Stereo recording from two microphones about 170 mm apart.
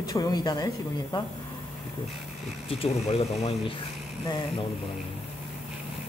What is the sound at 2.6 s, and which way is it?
Speech, 40° left (ahead or behind).